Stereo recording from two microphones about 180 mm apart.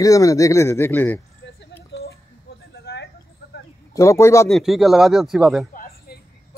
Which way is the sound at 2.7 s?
65° left (ahead or behind).